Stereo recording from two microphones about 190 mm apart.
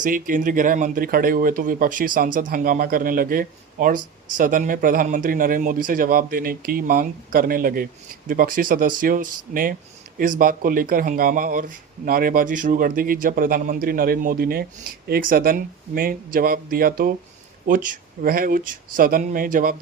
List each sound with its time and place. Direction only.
0.0 s speech: 45° right (ahead or behind)